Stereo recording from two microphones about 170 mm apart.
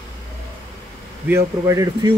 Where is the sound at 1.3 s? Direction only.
20° right (ahead or behind).